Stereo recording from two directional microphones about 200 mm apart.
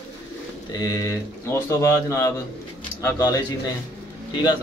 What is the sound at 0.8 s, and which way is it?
Speech, 15° left (ahead or behind).